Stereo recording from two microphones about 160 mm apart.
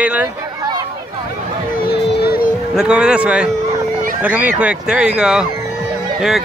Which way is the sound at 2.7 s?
5° right (ahead or behind).